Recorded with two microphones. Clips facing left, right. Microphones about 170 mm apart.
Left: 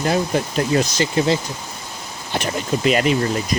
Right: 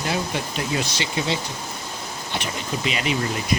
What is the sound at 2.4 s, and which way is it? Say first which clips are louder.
Speech: left 9 dB; 45° left (ahead or behind).